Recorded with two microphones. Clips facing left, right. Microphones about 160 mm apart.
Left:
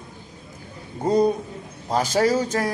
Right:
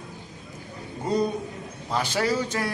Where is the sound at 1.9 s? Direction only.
40° left (ahead or behind).